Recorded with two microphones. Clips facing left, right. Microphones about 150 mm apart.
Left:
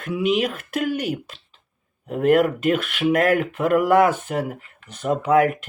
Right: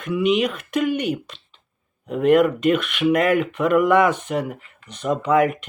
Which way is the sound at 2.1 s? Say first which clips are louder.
Right 1 dB; 50° left (ahead or behind).